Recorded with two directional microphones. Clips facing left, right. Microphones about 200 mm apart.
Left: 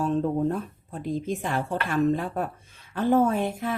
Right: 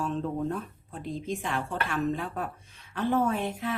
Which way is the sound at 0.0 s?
40° left (ahead or behind).